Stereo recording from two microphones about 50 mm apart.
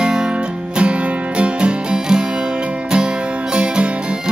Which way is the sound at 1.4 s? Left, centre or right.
Centre.